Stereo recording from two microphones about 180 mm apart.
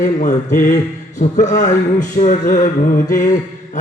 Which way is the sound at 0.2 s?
45° left (ahead or behind).